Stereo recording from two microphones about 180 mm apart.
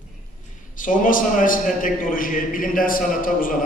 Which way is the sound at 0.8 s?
50° left (ahead or behind).